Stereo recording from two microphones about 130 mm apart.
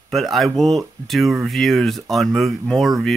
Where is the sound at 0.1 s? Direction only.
Centre (ahead or behind).